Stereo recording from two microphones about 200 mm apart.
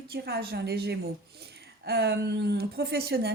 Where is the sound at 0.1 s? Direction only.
50° right (ahead or behind).